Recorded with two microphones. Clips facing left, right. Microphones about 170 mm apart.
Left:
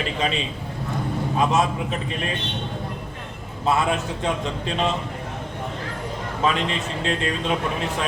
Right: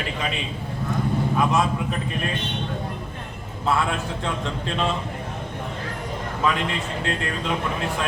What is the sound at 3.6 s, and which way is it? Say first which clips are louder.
Speech: left 2 dB; 20° left (ahead or behind).